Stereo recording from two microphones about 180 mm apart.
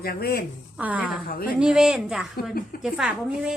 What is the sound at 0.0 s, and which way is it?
Speech, 60° left (ahead or behind).